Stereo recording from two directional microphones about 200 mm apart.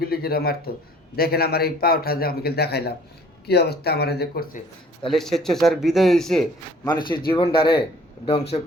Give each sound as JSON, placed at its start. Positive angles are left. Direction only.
{"t": 0.0, "sound": "a man's voice", "side_deg": 50}
{"t": 5.0, "sound": "speech", "side_deg": 0}
{"t": 7.3, "sound": "speech", "side_deg": 25}